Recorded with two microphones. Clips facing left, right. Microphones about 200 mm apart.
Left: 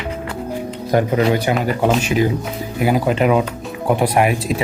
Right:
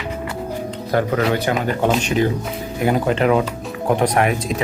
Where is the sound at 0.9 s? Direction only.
15° left (ahead or behind).